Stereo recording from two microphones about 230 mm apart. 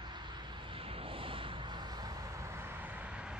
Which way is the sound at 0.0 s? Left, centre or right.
Centre.